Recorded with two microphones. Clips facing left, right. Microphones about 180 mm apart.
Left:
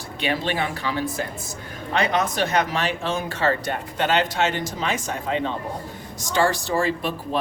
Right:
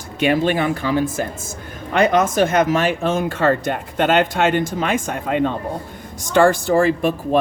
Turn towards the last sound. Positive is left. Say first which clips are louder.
# right 7 dB
turn(degrees=-50)  # may be behind; listen again after turning